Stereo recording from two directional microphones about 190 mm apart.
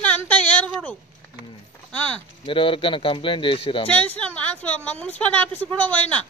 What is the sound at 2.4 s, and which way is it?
Speech, 25° left (ahead or behind).